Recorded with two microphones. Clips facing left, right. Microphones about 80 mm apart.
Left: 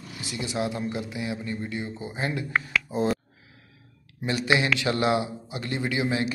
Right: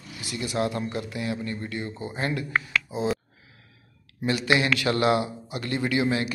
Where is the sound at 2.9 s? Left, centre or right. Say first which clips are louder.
Left 6 dB; left.